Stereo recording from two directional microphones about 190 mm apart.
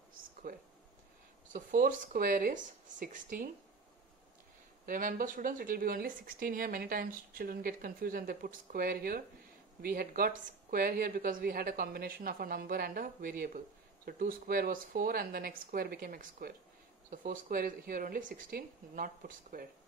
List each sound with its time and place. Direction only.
0.5 s speech: 50° right (ahead or behind)
4.8 s speech: 45° right (ahead or behind)